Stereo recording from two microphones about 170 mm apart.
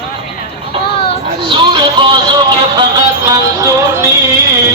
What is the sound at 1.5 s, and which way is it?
Music, 30° right (ahead or behind).